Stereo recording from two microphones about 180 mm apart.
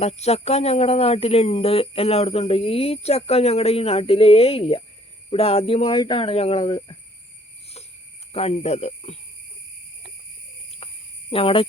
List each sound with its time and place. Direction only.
0.0 s speech: 35° left (ahead or behind)
8.3 s speech: 35° left (ahead or behind)
10.8 s a sound: 30° left (ahead or behind)
11.3 s speech: 30° left (ahead or behind)